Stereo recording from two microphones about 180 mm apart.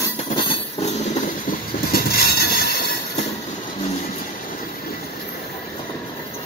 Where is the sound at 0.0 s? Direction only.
25° left (ahead or behind).